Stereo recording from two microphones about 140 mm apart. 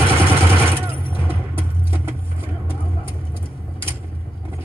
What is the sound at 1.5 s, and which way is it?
Vehicle, 15° right (ahead or behind).